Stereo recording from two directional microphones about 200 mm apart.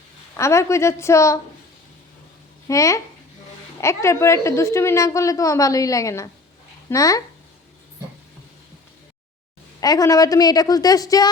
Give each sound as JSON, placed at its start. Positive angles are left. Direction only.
{"t": 0.3, "sound": "a woman's voice", "side_deg": 15}
{"t": 2.6, "sound": "a woman's voice", "side_deg": 15}
{"t": 9.8, "sound": "a woman's voice", "side_deg": 20}